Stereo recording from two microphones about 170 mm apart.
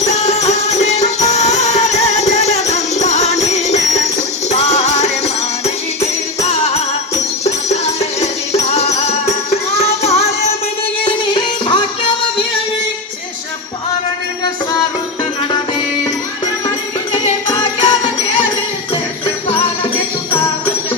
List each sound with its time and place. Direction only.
0.1 s music: 40° left (ahead or behind)
7.4 s music: 40° left (ahead or behind)
11.0 s music: 30° left (ahead or behind)
16.6 s music: 25° left (ahead or behind)
19.2 s music: 30° left (ahead or behind)